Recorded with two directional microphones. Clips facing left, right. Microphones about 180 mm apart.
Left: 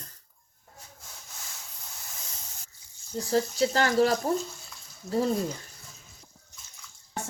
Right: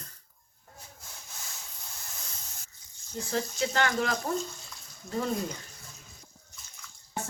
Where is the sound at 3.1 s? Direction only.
35° left (ahead or behind).